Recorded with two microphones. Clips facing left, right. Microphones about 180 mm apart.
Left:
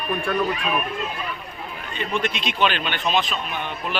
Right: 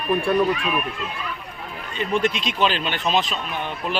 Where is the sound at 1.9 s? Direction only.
40° right (ahead or behind).